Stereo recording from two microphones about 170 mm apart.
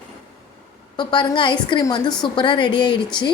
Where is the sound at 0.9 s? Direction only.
25° left (ahead or behind).